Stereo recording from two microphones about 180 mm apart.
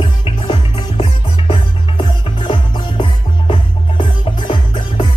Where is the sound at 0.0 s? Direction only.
25° left (ahead or behind).